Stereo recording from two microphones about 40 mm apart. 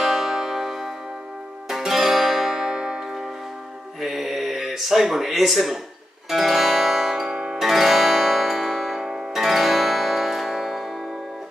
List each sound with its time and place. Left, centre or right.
0.0 s music: centre
4.0 s a sound: centre
6.3 s music: centre
7.2 s zither: centre
7.6 s music: centre